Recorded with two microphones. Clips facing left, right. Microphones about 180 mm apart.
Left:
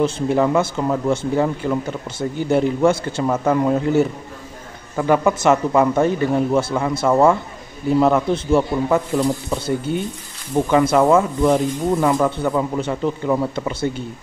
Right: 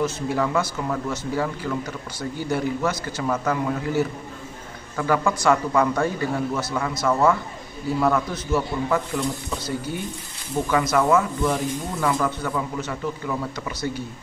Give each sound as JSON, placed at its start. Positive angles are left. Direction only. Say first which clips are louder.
{"t": 0.0, "sound": "speech", "louder": "left 6 dB", "side_deg": 25}